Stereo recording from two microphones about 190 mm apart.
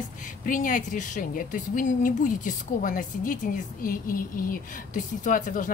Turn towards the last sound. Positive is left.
turn(degrees=45)  # may be behind; listen again after turning